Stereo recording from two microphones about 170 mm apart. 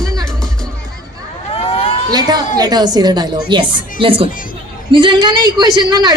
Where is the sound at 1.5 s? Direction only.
35° left (ahead or behind).